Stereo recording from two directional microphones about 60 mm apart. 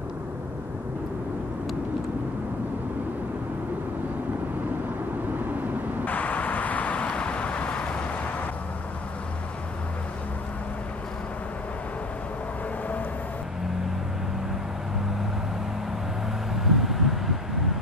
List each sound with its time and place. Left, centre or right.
6.0 s vehicle: left
16.5 s vehicle: centre